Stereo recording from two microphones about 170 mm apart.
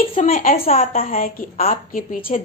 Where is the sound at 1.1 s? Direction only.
55° left (ahead or behind).